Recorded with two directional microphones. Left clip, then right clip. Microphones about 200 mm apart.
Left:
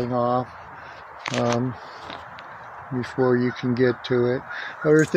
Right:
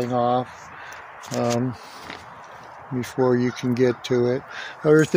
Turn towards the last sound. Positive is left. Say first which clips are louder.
# right 1 dB
turn(degrees=-25)  # may be behind; listen again after turning